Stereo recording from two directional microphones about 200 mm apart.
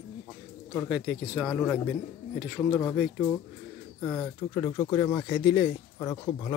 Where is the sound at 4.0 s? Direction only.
10° left (ahead or behind).